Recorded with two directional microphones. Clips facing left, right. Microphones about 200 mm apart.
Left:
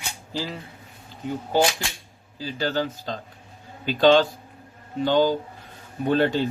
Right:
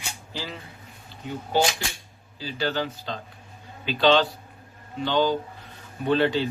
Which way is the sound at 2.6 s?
45° left (ahead or behind).